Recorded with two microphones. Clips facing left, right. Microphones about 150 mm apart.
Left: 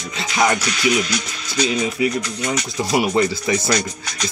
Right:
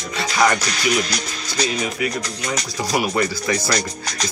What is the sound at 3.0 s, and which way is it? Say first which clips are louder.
Speech: left 3 dB; 20° left (ahead or behind).